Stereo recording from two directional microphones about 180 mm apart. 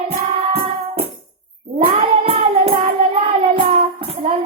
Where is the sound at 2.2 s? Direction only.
30° right (ahead or behind).